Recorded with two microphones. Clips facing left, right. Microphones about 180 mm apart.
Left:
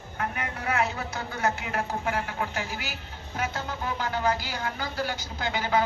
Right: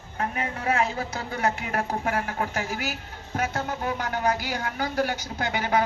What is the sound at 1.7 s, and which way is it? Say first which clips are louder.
A woman's voice: right 2 dB; 45° right (ahead or behind).